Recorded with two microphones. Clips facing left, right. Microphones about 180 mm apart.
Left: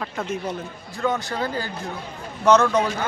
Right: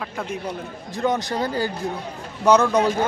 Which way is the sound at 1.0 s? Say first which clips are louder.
Right 2 dB; 15° right (ahead or behind).